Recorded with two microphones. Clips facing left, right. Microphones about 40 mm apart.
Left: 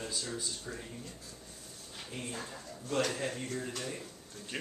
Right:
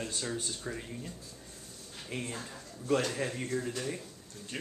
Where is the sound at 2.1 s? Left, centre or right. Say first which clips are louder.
Right 4 dB; right.